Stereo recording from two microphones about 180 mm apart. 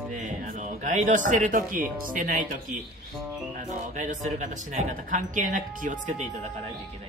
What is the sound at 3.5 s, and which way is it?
Speech, 45° right (ahead or behind).